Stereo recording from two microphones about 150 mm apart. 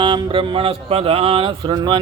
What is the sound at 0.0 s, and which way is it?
Speech, 35° right (ahead or behind).